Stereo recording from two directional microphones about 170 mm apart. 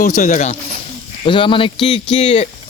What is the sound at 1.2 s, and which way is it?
Speech, 30° left (ahead or behind).